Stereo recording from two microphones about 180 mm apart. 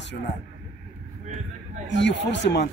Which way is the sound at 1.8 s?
80° left.